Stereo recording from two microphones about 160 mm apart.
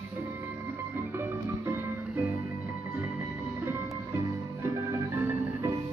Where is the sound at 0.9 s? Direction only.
15° right (ahead or behind).